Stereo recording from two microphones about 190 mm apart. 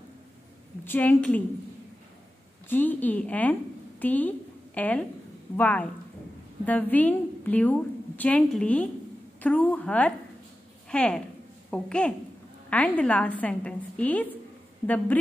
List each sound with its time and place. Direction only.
0.8 s a woman's voice: 10° left (ahead or behind)
2.7 s a woman's voice: 10° left (ahead or behind)